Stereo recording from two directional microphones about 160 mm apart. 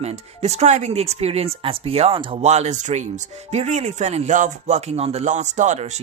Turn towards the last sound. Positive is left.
turn(degrees=-45)  # may be behind; listen again after turning